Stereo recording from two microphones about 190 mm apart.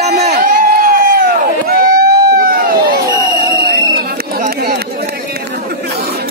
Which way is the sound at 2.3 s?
50° right (ahead or behind).